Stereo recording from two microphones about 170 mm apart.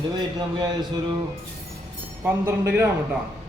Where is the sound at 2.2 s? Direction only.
15° right (ahead or behind).